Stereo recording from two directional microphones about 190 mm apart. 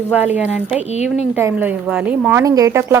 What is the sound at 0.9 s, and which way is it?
Speech, 35° left (ahead or behind).